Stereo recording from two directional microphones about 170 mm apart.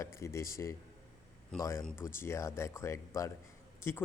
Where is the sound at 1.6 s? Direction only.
15° left (ahead or behind).